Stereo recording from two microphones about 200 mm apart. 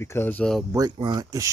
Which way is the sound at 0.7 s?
20° right (ahead or behind).